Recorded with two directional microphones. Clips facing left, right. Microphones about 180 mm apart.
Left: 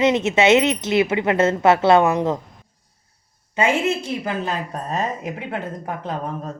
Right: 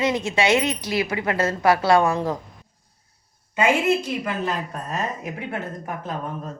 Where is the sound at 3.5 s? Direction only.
30° left (ahead or behind).